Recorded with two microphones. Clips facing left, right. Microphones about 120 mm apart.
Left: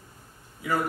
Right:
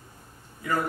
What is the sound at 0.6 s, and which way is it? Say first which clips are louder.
Speech: left 1 dB; 10° left (ahead or behind).